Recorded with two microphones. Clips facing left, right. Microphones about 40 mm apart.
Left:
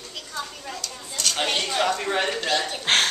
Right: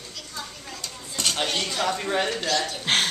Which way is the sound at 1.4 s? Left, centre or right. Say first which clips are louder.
Left 4 dB; left.